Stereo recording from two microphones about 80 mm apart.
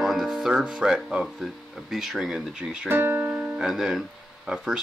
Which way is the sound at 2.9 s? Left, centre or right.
Right.